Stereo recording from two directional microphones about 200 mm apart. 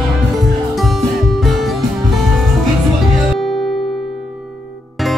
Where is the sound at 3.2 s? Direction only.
Centre (ahead or behind).